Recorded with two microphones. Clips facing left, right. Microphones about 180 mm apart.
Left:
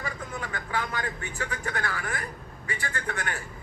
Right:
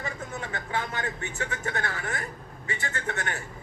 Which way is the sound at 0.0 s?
25° right (ahead or behind).